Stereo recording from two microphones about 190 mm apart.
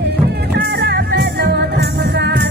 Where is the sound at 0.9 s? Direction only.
60° right (ahead or behind).